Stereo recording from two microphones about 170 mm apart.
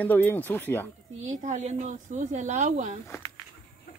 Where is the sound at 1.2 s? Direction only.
45° right (ahead or behind).